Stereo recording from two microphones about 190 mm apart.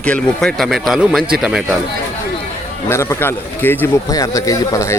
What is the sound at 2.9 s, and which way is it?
Speech, 15° left (ahead or behind).